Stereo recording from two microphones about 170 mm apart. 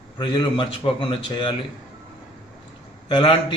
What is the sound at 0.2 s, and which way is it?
Speech, 30° left (ahead or behind).